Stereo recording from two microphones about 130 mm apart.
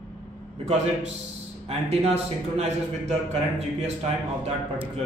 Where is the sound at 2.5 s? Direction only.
55° right (ahead or behind).